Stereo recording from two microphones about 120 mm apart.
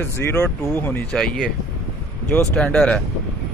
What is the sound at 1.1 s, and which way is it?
Speech, centre (ahead or behind).